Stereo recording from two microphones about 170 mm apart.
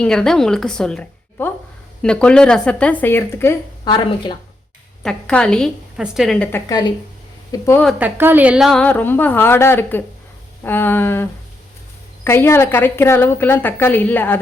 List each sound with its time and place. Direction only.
0.0 s a woman's voice: 5° left (ahead or behind)
3.8 s speech: 25° left (ahead or behind)
5.0 s a woman's voice: 5° left (ahead or behind)
6.7 s a woman's voice: 25° left (ahead or behind)
7.9 s a woman's voice: 10° right (ahead or behind); by 14.3 s 10° left (ahead or behind)